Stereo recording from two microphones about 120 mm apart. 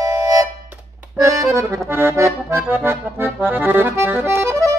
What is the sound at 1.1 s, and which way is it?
Accordion, 30° right (ahead or behind).